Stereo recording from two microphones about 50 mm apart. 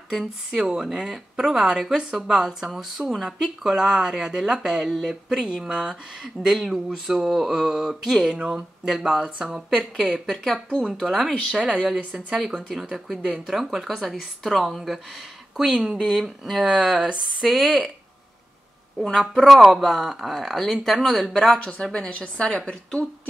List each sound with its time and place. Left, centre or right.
0.1 s speech: centre
8.4 s speech: centre
8.8 s speech: centre
9.7 s speech: centre
12.0 s a woman's voice: right
12.5 s speech: centre
16.1 s speech: centre
19.0 s speech: centre
21.8 s a woman's voice: centre